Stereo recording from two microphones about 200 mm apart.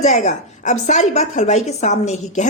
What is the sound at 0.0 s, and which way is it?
A woman's voice, 35° left (ahead or behind).